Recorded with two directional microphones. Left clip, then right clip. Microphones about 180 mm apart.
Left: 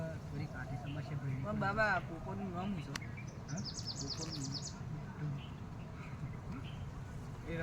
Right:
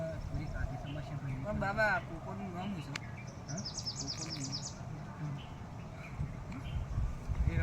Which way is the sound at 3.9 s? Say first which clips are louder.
Right 2 dB; 70° left (ahead or behind).